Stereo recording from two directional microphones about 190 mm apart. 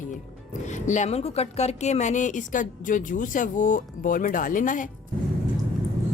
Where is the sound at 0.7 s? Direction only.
40° left (ahead or behind).